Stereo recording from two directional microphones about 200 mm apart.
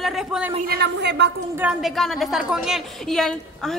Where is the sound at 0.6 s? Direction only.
55° right (ahead or behind).